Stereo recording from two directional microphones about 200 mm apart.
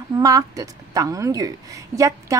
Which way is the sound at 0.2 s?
15° right (ahead or behind).